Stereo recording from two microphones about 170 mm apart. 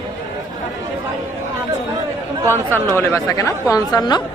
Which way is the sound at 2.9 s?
20° left (ahead or behind).